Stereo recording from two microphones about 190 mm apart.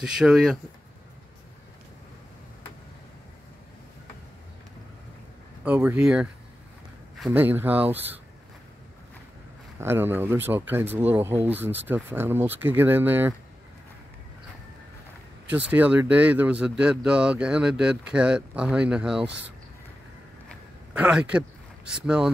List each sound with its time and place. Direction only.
0.0 s speech: 5° right (ahead or behind)
5.6 s speech: 5° right (ahead or behind)
7.2 s speech: 10° right (ahead or behind)
9.8 s speech: 10° right (ahead or behind)
15.5 s speech: 10° right (ahead or behind)
20.9 s speech: 5° right (ahead or behind)